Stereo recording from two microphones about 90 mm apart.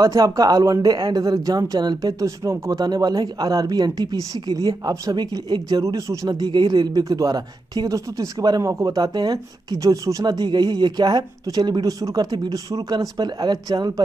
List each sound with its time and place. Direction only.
0.0 s speech: 45° right (ahead or behind)
10.2 s speech: 55° right (ahead or behind)